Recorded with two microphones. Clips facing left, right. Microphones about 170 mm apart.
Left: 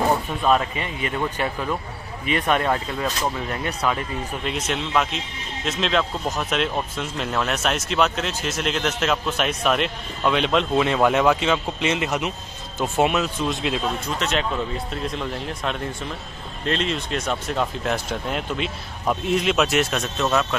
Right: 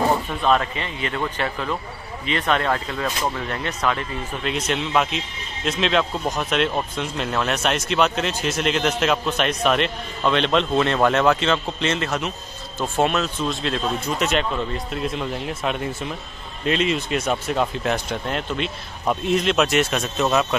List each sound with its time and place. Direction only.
0.1 s speech: 10° left (ahead or behind)
4.5 s speech: centre (ahead or behind)
14.1 s speech: 10° right (ahead or behind)
20.2 s speech: 10° right (ahead or behind)